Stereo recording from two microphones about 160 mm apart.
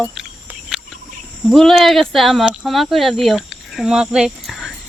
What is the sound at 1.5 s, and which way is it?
Speech, centre (ahead or behind).